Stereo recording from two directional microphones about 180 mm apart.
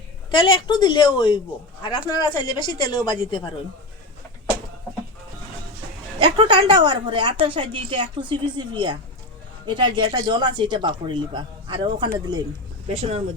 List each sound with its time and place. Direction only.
0.3 s a woman's voice: 25° left (ahead or behind)
6.1 s a woman's voice: 30° right (ahead or behind)
12.9 s speech: 35° right (ahead or behind)